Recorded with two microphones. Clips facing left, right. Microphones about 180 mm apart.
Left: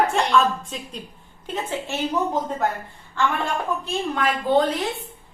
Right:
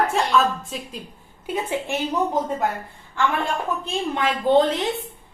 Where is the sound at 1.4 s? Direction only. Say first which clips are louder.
Right 3 dB; 10° right (ahead or behind).